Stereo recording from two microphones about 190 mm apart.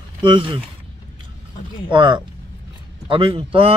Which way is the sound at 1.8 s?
25° right (ahead or behind).